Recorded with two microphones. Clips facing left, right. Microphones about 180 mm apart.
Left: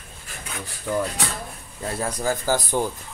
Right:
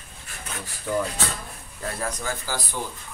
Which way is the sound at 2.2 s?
45° left (ahead or behind).